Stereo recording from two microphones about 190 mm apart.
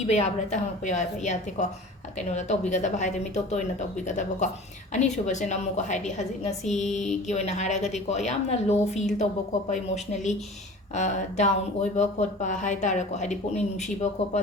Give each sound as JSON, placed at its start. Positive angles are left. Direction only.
{"t": 0.1, "sound": "speech", "side_deg": 35}